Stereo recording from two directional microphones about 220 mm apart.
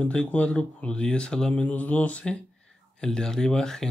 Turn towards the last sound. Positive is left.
turn(degrees=5)  # may be behind; listen again after turning